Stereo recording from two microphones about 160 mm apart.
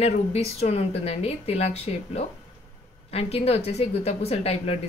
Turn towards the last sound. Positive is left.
turn(degrees=40)  # may be behind; listen again after turning